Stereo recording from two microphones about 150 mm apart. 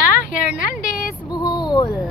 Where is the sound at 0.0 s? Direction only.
65° left (ahead or behind).